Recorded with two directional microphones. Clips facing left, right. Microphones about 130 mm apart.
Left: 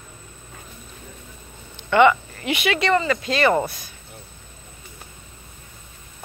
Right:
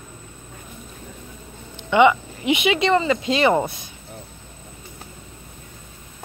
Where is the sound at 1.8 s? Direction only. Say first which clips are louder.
Even; 15° right (ahead or behind).